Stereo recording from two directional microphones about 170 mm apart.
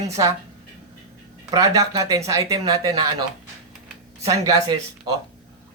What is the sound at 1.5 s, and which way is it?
Speech, 20° right (ahead or behind).